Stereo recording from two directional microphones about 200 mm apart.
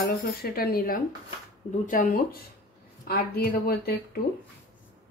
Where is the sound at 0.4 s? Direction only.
50° left (ahead or behind).